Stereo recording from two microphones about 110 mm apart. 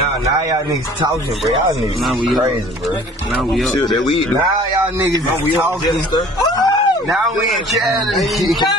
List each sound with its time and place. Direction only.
2.0 s speech: centre (ahead or behind)
6.1 s speech: 35° left (ahead or behind)
7.7 s speech: centre (ahead or behind)